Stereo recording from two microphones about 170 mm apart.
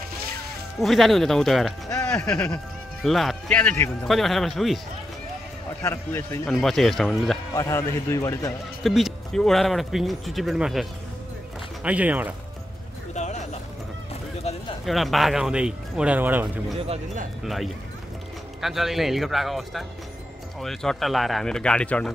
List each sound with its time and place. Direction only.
0.7 s speech: centre (ahead or behind)
4.1 s speech: centre (ahead or behind)
5.8 s a man's voice: 15° left (ahead or behind)
6.4 s speech: centre (ahead or behind)
7.5 s a man's voice: 20° left (ahead or behind)
8.8 s speech: centre (ahead or behind)
13.1 s a sound: 45° left (ahead or behind)
14.9 s speech: centre (ahead or behind)
16.8 s speech: 40° right (ahead or behind)
17.4 s speech: centre (ahead or behind)